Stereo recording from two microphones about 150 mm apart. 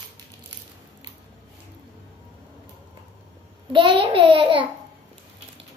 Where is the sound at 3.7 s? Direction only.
35° right (ahead or behind).